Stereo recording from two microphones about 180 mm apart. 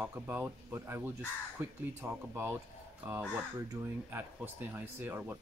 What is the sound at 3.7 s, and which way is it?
Speech, 15° right (ahead or behind).